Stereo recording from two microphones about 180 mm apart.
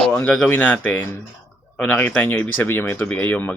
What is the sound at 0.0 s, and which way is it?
Speech, 10° left (ahead or behind).